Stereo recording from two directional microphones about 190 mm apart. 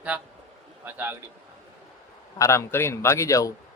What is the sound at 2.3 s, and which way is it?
Speech, 15° left (ahead or behind).